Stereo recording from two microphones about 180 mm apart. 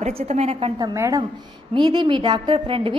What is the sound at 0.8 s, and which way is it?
A woman's voice, 20° right (ahead or behind).